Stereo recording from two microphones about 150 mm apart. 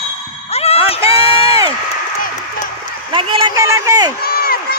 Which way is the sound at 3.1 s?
35° right (ahead or behind).